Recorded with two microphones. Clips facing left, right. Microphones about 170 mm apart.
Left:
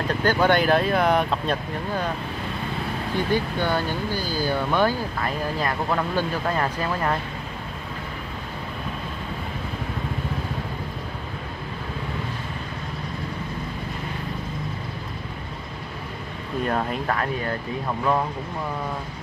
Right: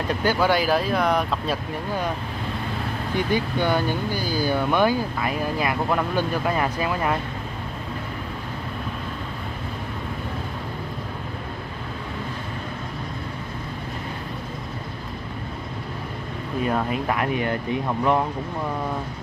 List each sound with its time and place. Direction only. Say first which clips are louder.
0.2 s speech: left 2 dB; 10° right (ahead or behind)
3.2 s speech: right 1 dB; 15° right (ahead or behind)
16.6 s speech: right 1 dB; 5° right (ahead or behind)
17.2 s speech: right 3 dB; 15° right (ahead or behind)